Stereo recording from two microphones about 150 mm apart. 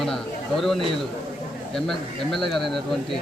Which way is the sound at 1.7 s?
Centre (ahead or behind).